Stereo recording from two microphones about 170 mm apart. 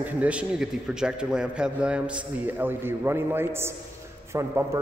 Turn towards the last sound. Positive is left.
turn(degrees=-15)  # may be behind; listen again after turning